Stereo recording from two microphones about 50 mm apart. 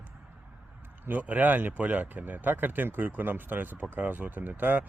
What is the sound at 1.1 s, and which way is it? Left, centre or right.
Speech, right.